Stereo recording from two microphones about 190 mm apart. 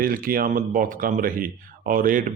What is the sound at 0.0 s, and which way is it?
A man's voice, 50° right (ahead or behind).